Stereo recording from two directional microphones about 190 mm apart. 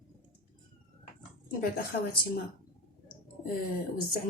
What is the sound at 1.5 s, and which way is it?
Speech, 50° left (ahead or behind).